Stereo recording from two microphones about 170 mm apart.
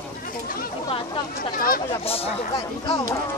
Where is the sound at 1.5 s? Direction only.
60° left (ahead or behind).